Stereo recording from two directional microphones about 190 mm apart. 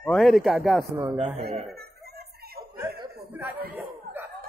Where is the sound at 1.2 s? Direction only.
35° right (ahead or behind).